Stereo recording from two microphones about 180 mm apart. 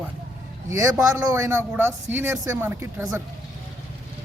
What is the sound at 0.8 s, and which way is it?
A man's voice, 20° right (ahead or behind).